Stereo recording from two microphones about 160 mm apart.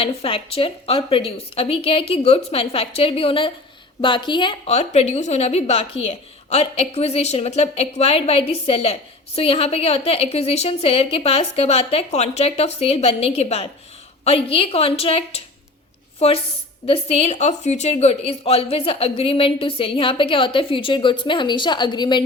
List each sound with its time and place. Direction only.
0.0 s a woman's voice: 35° left (ahead or behind)
4.7 s a woman's voice: 45° left (ahead or behind)